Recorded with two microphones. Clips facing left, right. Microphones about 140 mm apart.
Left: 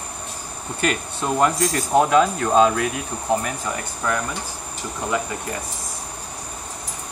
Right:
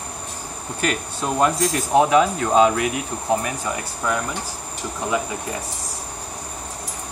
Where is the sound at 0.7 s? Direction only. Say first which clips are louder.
Left 1 dB; centre (ahead or behind).